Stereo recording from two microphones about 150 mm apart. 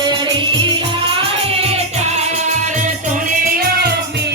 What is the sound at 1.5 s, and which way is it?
Music, 40° right (ahead or behind).